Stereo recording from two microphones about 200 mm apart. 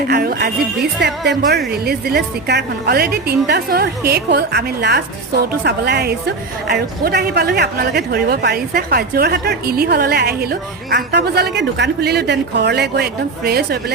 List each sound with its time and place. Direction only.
0.1 s a woman's voice: 50° right (ahead or behind)